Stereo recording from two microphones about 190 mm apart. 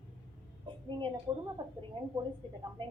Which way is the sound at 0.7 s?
25° right (ahead or behind).